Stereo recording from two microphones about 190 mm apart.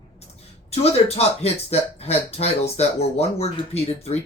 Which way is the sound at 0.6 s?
35° left (ahead or behind).